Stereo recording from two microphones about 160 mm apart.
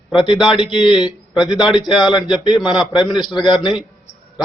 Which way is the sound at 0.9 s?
5° right (ahead or behind).